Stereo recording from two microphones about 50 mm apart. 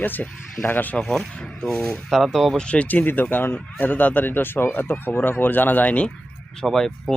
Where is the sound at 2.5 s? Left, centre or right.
Left.